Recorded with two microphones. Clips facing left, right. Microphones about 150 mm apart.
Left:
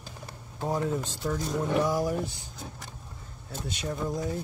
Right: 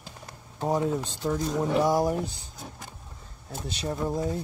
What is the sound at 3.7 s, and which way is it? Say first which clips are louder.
Speech: right 2 dB; 30° right (ahead or behind).